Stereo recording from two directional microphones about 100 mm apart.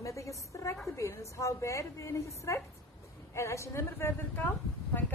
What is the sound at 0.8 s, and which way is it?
A woman's voice, 30° left (ahead or behind).